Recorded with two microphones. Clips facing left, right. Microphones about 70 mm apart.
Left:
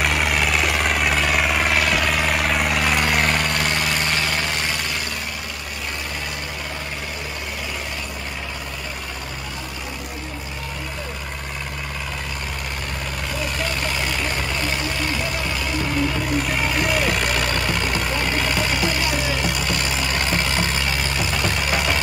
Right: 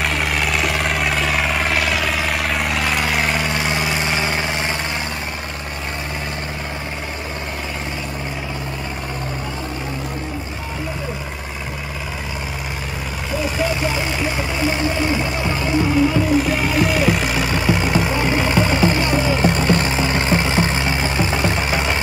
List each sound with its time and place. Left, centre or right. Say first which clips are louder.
0.0 s vehicle: even; centre
13.4 s vehicle: right 6 dB; centre
16.3 s vehicle: right 5 dB; centre; by 22.0 s right